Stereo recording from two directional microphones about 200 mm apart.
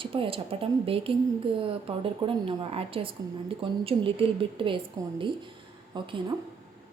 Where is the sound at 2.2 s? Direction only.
25° right (ahead or behind).